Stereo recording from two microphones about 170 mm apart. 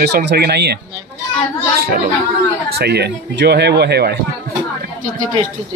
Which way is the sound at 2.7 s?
75° right (ahead or behind).